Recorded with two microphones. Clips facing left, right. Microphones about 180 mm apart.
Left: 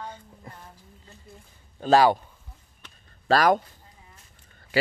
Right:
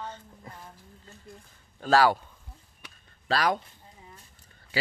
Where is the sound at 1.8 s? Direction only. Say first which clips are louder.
Left 3 dB; 20° left (ahead or behind).